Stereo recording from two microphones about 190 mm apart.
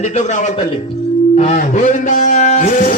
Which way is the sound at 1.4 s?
35° left (ahead or behind).